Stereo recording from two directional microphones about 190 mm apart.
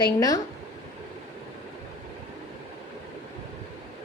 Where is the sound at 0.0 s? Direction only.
20° left (ahead or behind).